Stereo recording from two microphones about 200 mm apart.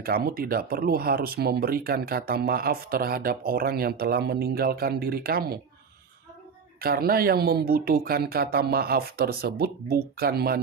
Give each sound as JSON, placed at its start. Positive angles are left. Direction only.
{"t": 0.0, "sound": "speech", "side_deg": -45}
{"t": 6.8, "sound": "speech", "side_deg": -50}